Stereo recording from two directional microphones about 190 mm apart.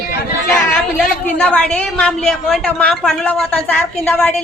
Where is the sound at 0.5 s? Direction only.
5° left (ahead or behind).